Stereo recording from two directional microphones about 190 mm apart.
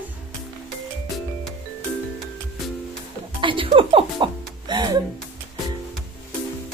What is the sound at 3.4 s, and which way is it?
Music, 25° right (ahead or behind).